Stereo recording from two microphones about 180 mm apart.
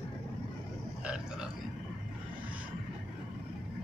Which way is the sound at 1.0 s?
5° right (ahead or behind).